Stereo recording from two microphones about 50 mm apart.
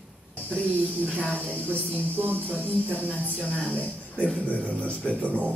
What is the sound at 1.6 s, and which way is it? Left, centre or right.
Speech, right.